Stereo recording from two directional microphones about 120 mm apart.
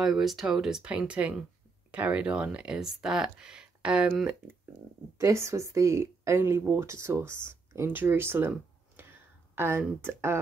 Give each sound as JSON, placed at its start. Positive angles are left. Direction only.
{"t": 0.0, "sound": "speech", "side_deg": 0}
{"t": 5.1, "sound": "speech", "side_deg": -25}